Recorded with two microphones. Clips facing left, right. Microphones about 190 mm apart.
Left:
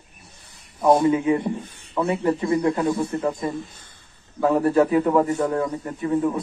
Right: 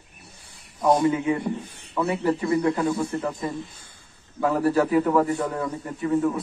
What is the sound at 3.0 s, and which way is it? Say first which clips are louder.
Speech: left 2 dB; 10° left (ahead or behind).